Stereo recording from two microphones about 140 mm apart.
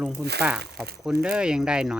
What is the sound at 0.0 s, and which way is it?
Speech, 5° right (ahead or behind).